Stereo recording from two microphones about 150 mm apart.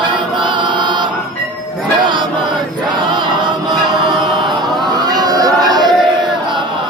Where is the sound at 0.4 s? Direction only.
30° right (ahead or behind).